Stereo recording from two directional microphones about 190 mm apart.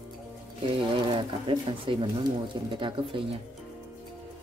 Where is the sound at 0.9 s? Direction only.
30° right (ahead or behind).